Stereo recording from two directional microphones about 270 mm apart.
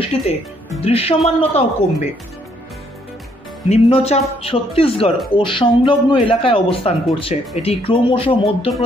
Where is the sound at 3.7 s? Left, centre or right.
Left.